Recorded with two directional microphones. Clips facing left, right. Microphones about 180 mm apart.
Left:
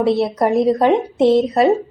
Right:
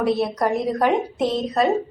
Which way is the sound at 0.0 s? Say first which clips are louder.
Left 4 dB; 25° left (ahead or behind).